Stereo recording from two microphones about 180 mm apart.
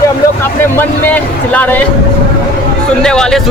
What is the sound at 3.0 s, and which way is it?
Speech, 5° left (ahead or behind).